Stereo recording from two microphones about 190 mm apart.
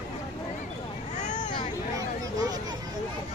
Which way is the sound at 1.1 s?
40° left (ahead or behind).